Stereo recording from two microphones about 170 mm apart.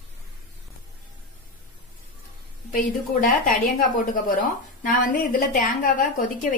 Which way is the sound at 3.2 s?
55° left (ahead or behind).